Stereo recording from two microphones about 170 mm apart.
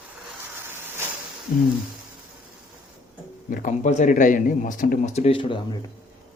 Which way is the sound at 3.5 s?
50° left (ahead or behind).